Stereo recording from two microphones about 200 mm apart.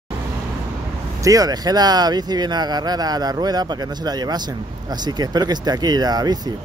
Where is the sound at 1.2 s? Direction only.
15° right (ahead or behind).